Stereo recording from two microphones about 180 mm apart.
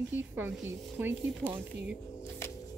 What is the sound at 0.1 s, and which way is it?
Speech, 10° right (ahead or behind).